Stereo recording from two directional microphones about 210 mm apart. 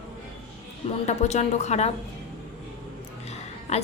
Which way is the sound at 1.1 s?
35° left (ahead or behind).